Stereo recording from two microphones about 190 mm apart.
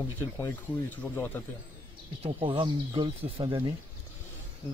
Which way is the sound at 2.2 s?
25° right (ahead or behind).